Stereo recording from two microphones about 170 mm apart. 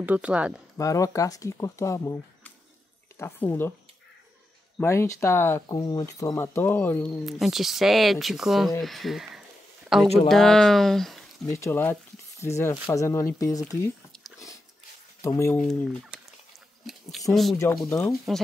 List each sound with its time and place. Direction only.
0.0 s speech: 10° right (ahead or behind)
0.7 s speech: 20° left (ahead or behind)
4.7 s speech: 15° left (ahead or behind)
7.2 s speech: centre (ahead or behind)
11.5 s speech: 15° left (ahead or behind)
14.1 s dog: centre (ahead or behind)
15.2 s speech: 15° left (ahead or behind)
15.6 s speech: 5° left (ahead or behind)
17.3 s speech: centre (ahead or behind)
17.8 s speech: 15° left (ahead or behind)